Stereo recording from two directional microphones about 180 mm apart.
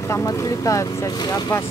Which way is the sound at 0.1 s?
15° left (ahead or behind).